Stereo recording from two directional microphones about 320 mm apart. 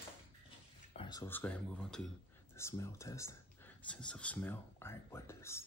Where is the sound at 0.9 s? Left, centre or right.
Centre.